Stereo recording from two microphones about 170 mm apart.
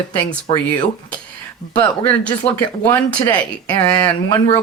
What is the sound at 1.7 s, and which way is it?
Speech, 10° left (ahead or behind).